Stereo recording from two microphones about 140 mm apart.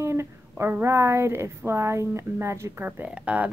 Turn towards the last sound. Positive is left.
turn(degrees=-10)  # may be behind; listen again after turning